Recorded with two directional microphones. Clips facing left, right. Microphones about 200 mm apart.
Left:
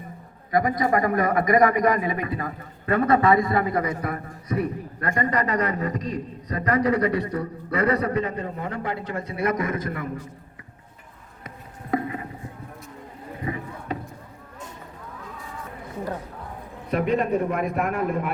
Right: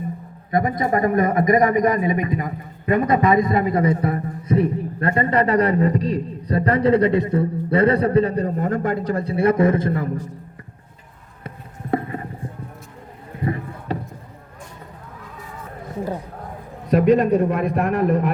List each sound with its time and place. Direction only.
0.5 s a man's voice: 25° right (ahead or behind)
11.4 s clip-clop: 30° right (ahead or behind)
13.4 s a sound: 35° right (ahead or behind)
16.9 s a man's voice: 40° right (ahead or behind)